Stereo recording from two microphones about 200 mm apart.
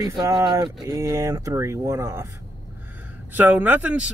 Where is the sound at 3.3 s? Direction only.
10° right (ahead or behind).